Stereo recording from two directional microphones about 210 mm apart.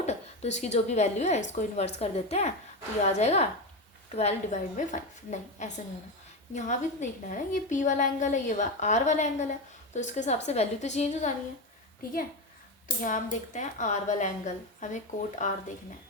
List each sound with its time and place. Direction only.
0.0 s a woman's voice: 30° left (ahead or behind)
13.0 s a woman's voice: 40° left (ahead or behind)